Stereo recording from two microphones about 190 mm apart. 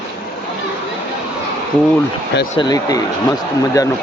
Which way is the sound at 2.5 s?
20° left (ahead or behind).